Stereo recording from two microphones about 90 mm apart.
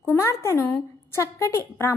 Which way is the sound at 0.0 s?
25° left (ahead or behind).